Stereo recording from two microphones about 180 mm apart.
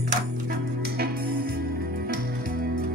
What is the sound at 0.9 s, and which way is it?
Music, 60° right (ahead or behind).